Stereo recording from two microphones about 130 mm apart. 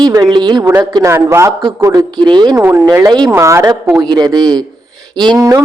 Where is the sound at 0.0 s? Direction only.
30° right (ahead or behind).